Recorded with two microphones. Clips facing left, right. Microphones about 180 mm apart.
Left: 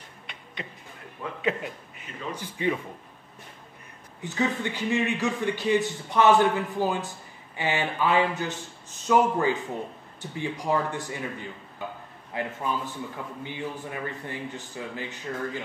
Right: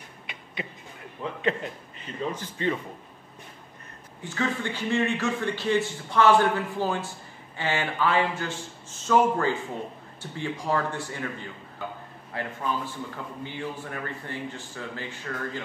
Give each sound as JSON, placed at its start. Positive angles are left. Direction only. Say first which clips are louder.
{"t": 0.3, "sound": "a sound", "louder": "right 2 dB", "side_deg": -5}
{"t": 1.4, "sound": "a man's voice", "louder": "even", "side_deg": 5}
{"t": 4.2, "sound": "a man's voice", "louder": "left 2 dB", "side_deg": 20}